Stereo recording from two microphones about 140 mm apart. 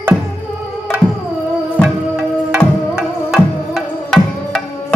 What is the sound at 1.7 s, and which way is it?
Music, 5° right (ahead or behind).